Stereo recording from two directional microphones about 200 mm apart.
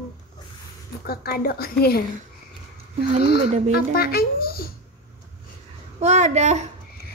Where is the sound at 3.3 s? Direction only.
35° right (ahead or behind).